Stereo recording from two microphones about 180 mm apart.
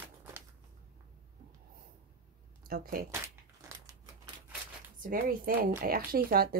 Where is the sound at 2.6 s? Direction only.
55° right (ahead or behind).